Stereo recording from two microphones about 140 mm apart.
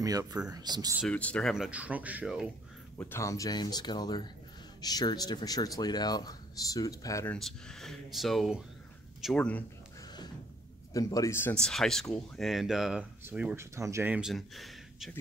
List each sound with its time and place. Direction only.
0.0 s speech: 25° right (ahead or behind)
1.0 s a man's voice: 10° left (ahead or behind)
1.5 s speech: 5° right (ahead or behind)
3.0 s speech: 20° left (ahead or behind)
7.3 s a man's voice: 5° left (ahead or behind)
10.9 s speech: 25° left (ahead or behind)
11.6 s speech: 5° left (ahead or behind)
13.6 s speech: 20° right (ahead or behind)
14.1 s speech: centre (ahead or behind)